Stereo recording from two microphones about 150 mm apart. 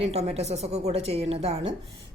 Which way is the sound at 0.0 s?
45° right (ahead or behind).